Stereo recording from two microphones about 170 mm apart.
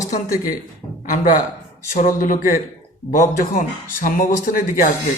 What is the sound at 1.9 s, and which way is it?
Speech, 50° left (ahead or behind).